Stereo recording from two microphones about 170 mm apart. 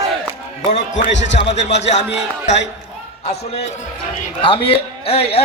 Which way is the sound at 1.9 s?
45° left (ahead or behind).